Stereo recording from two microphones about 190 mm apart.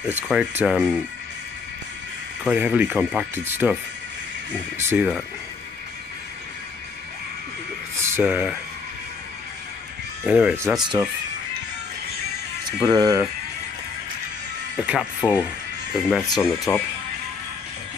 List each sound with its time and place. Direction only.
0.3 s speech: 5° right (ahead or behind)
2.4 s speech: 5° right (ahead or behind)
4.8 s speech: 5° right (ahead or behind)
8.0 s speech: 10° right (ahead or behind)
10.2 s speech: 10° right (ahead or behind)
10.8 s speech: 20° right (ahead or behind)
12.8 s speech: 20° right (ahead or behind)
15.1 s speech: 25° left (ahead or behind)
16.1 s speech: centre (ahead or behind)
16.5 s speech: 20° left (ahead or behind)